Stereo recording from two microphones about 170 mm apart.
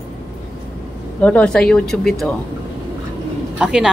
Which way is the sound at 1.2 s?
10° left (ahead or behind).